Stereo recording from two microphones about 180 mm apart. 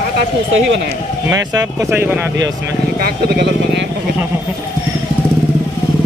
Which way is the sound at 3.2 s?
70° right (ahead or behind).